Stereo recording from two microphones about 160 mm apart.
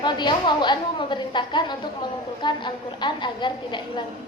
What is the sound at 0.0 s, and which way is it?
A woman's voice, 30° left (ahead or behind).